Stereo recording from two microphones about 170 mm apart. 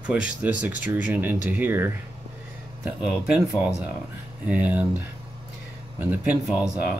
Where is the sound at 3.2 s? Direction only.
5° right (ahead or behind).